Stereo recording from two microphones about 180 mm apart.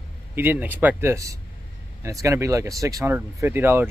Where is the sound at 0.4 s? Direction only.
10° right (ahead or behind).